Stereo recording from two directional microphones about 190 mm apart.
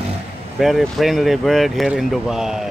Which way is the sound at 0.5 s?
Centre (ahead or behind).